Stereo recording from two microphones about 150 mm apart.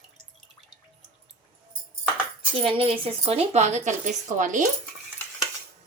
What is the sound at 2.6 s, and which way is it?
Speech, 40° right (ahead or behind).